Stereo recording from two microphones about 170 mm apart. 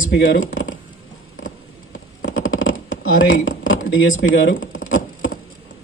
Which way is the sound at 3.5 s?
55° left (ahead or behind).